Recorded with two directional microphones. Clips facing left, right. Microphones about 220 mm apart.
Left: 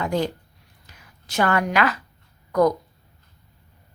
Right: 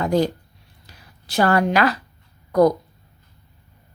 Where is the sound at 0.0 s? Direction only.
40° right (ahead or behind).